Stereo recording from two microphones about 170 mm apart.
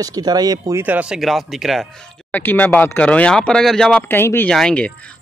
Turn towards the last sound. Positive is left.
turn(degrees=5)  # may be behind; listen again after turning